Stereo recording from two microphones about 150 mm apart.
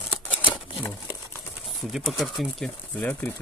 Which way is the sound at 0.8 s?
15° left (ahead or behind).